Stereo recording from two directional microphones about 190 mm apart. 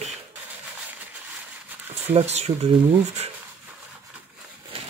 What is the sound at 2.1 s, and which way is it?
Speech, 35° right (ahead or behind).